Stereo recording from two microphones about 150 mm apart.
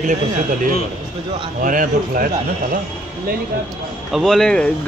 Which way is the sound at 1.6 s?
65° right (ahead or behind).